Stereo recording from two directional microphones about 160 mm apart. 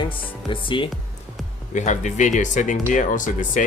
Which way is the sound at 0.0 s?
30° left (ahead or behind).